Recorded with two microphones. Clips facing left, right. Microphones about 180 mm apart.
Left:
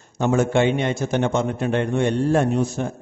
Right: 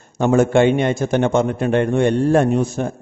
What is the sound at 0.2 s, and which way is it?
A man's voice, 55° right (ahead or behind).